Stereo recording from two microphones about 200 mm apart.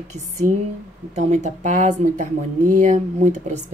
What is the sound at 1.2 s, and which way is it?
Speech, 35° right (ahead or behind).